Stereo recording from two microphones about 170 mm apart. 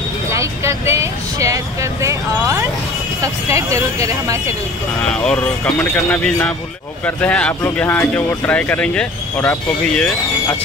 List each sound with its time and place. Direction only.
0.3 s speech: 15° right (ahead or behind)
5.0 s speech: 5° left (ahead or behind)